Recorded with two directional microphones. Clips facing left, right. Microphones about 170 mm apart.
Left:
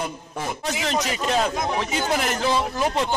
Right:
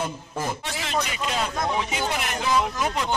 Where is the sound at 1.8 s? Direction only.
40° left (ahead or behind).